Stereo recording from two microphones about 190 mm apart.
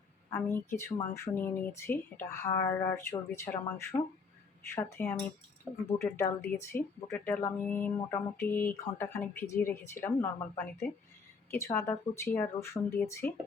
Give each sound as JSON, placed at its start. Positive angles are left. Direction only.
{"t": 0.3, "sound": "speech", "side_deg": 15}
{"t": 5.7, "sound": "speech", "side_deg": -10}
{"t": 6.0, "sound": "speech", "side_deg": 15}